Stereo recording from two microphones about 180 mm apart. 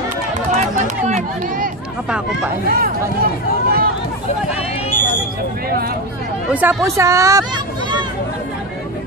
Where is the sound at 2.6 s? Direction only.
55° right (ahead or behind).